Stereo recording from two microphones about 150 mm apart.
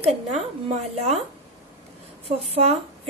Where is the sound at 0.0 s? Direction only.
45° right (ahead or behind).